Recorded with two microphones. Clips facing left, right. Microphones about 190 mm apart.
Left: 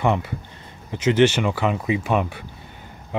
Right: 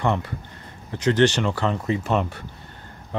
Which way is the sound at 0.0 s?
15° left (ahead or behind).